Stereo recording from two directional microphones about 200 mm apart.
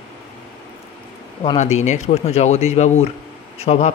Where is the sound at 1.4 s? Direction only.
35° left (ahead or behind).